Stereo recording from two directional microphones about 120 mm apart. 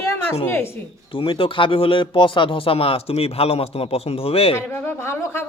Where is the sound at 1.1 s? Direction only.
45° left (ahead or behind).